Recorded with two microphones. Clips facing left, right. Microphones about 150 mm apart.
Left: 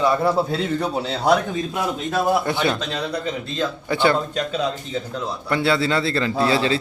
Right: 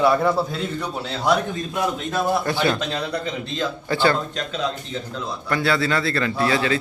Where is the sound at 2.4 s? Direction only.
20° left (ahead or behind).